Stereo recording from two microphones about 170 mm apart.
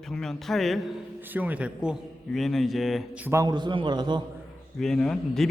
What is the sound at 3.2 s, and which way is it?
Speech, 20° right (ahead or behind).